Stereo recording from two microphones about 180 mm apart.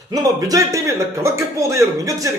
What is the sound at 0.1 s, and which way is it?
Speech, 20° right (ahead or behind).